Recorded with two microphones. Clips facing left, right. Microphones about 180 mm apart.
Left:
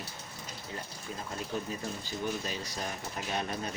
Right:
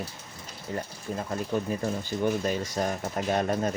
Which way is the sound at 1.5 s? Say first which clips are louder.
Right 8 dB; 55° right (ahead or behind).